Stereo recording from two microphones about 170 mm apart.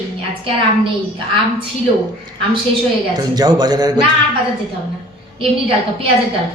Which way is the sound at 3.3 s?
25° right (ahead or behind).